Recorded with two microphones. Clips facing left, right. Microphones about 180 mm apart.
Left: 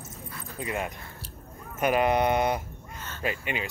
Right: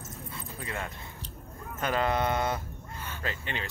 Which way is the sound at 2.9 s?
15° right (ahead or behind).